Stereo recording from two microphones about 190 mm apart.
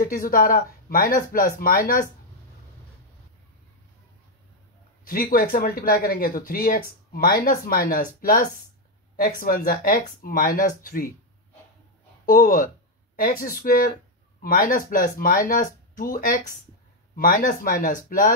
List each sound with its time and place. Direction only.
0.0 s speech: 50° left (ahead or behind)
5.0 s speech: 50° left (ahead or behind)
12.3 s speech: 45° left (ahead or behind)